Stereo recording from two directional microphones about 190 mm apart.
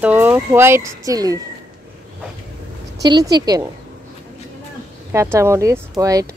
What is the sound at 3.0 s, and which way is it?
Speech, 20° right (ahead or behind).